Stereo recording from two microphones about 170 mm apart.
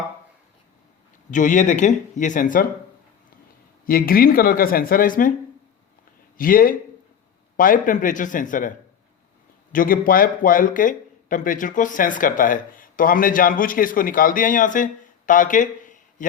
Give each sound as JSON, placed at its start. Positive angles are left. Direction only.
{"t": 1.3, "sound": "speech", "side_deg": 50}
{"t": 3.8, "sound": "speech", "side_deg": 60}
{"t": 6.3, "sound": "speech", "side_deg": 55}
{"t": 9.7, "sound": "speech", "side_deg": 55}
{"t": 15.3, "sound": "a sound", "side_deg": 50}